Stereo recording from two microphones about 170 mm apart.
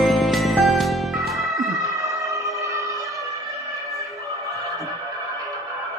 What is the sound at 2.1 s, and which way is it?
Music, 20° right (ahead or behind).